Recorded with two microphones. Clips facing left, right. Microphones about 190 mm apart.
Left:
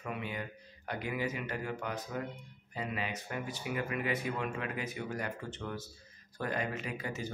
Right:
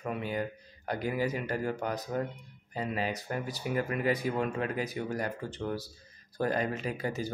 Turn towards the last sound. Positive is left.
turn(degrees=-35)  # may be behind; listen again after turning